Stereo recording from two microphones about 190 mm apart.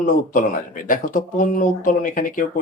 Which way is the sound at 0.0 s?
45° left (ahead or behind).